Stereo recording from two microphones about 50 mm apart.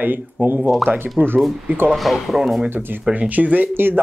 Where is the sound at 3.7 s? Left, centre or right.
Right.